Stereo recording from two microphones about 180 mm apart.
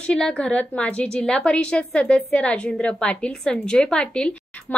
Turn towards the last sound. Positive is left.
turn(degrees=5)  # may be behind; listen again after turning